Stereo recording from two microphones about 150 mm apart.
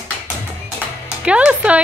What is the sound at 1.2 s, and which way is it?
Speech, 5° right (ahead or behind).